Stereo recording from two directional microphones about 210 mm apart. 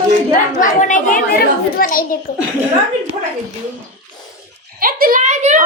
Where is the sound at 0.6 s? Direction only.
35° left (ahead or behind).